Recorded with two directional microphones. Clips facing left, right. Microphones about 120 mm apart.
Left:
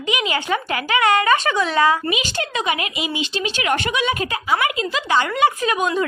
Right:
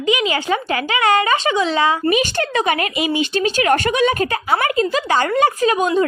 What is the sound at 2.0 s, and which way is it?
Speech, 50° right (ahead or behind).